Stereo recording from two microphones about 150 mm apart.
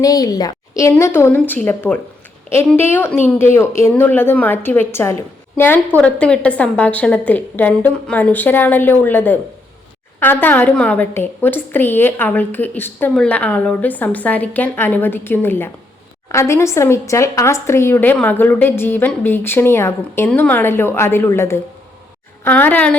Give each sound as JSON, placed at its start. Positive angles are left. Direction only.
{"t": 0.0, "sound": "a woman's voice", "side_deg": 25}